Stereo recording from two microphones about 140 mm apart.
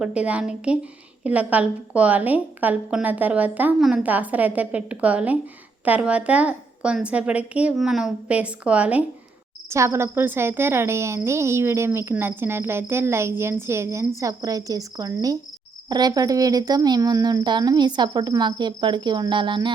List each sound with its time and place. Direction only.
0.0 s speech: 10° right (ahead or behind)
9.6 s a woman's voice: 20° right (ahead or behind); by 19.7 s 35° right (ahead or behind)